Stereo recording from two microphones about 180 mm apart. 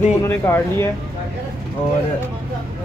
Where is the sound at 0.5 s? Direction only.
10° left (ahead or behind).